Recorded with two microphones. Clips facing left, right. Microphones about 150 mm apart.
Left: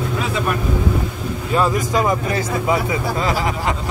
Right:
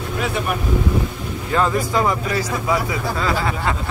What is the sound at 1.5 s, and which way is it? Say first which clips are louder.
Speech: left 1 dB; 15° left (ahead or behind).